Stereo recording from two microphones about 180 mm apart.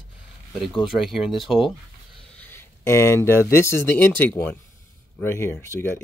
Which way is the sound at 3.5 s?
15° left (ahead or behind).